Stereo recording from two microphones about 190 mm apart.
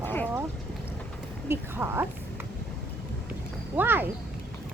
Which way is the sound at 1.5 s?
10° right (ahead or behind).